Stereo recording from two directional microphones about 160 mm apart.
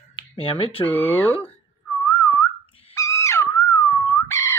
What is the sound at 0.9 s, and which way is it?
Speech, 15° left (ahead or behind).